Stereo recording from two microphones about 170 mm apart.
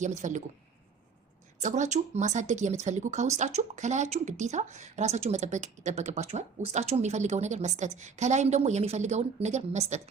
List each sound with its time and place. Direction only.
0.0 s speech: 45° right (ahead or behind)
1.6 s speech: 45° right (ahead or behind)